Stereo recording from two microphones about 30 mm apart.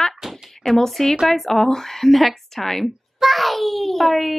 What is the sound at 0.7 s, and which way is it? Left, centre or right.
Speech, centre.